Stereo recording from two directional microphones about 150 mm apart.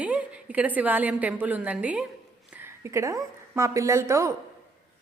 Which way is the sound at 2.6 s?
20° right (ahead or behind).